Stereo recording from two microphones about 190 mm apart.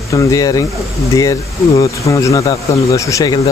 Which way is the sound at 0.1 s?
15° left (ahead or behind).